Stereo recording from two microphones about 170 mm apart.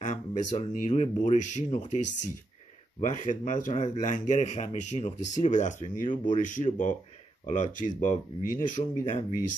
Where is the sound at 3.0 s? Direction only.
50° left (ahead or behind).